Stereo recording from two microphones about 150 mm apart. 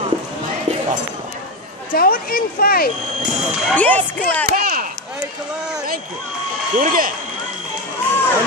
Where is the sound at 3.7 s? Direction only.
10° left (ahead or behind).